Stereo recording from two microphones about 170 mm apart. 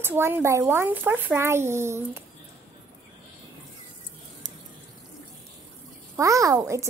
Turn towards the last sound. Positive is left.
turn(degrees=-15)  # may be behind; listen again after turning